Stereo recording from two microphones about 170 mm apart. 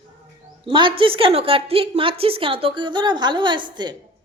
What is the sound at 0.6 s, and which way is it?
A woman's voice, 30° right (ahead or behind).